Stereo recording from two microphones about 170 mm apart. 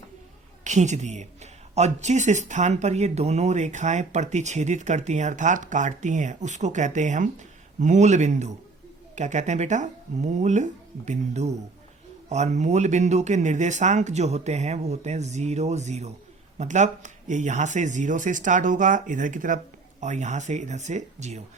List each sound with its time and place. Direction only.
0.6 s a woman's voice: 45° right (ahead or behind)